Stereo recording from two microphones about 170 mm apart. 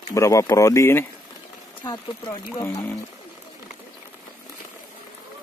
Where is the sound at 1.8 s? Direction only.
25° left (ahead or behind).